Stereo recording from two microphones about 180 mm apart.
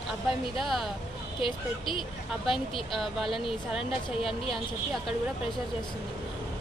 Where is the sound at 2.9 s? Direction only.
Centre (ahead or behind).